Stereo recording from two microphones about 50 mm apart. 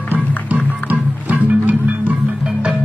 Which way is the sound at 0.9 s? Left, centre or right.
Right.